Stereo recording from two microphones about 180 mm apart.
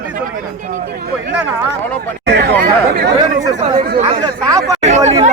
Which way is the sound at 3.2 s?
20° right (ahead or behind).